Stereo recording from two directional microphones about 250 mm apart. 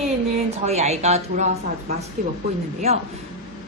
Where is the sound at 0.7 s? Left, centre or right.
Right.